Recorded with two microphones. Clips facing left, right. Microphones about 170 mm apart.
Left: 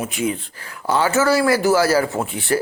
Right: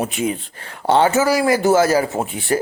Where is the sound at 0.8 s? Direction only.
25° right (ahead or behind).